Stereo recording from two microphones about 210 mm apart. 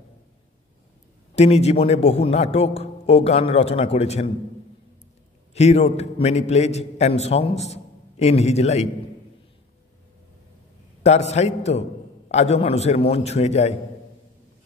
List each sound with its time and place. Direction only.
1.3 s a man's voice: 30° left (ahead or behind)
5.5 s a man's voice: 30° left (ahead or behind)
11.0 s a man's voice: 30° left (ahead or behind)